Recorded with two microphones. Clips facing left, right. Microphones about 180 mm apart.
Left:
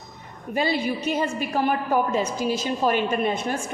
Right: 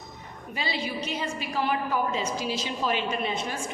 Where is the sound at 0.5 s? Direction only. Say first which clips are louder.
Left 8 dB; 50° left (ahead or behind).